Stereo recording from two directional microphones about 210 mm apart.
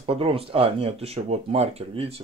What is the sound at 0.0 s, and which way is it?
Speech, 25° right (ahead or behind).